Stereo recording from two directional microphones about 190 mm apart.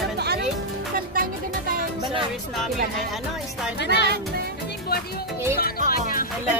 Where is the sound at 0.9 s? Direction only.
50° right (ahead or behind).